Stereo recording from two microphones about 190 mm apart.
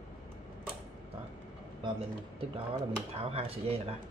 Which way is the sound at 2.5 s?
30° right (ahead or behind).